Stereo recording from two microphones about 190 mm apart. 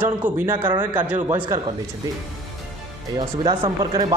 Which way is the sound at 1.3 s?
20° right (ahead or behind).